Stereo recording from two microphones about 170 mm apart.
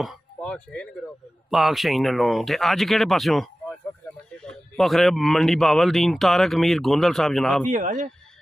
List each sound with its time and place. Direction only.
0.0 s a sound: centre (ahead or behind)
1.5 s speech: centre (ahead or behind)
7.7 s speech: 50° right (ahead or behind)